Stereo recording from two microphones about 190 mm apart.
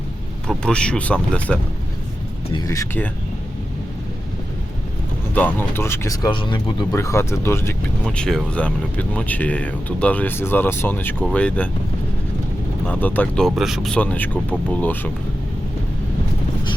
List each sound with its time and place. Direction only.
0.4 s speech: 5° left (ahead or behind)
2.5 s speech: 15° left (ahead or behind)
5.3 s speech: 10° left (ahead or behind); by 6.8 s 25° left (ahead or behind)
6.9 s speech: 15° left (ahead or behind)
12.9 s speech: 10° left (ahead or behind)